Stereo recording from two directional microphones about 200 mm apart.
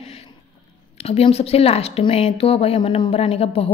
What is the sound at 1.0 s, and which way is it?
Speech, 30° left (ahead or behind).